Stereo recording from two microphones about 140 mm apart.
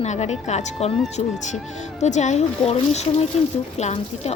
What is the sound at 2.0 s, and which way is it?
A woman's voice, 55° left (ahead or behind).